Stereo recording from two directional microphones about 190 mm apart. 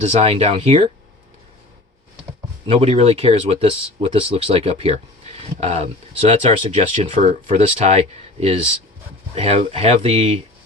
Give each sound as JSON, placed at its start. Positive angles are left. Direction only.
{"t": 0.0, "sound": "speech", "side_deg": -35}
{"t": 2.6, "sound": "speech", "side_deg": -30}